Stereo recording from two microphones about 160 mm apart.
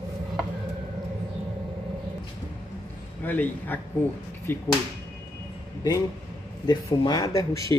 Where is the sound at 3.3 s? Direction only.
10° left (ahead or behind).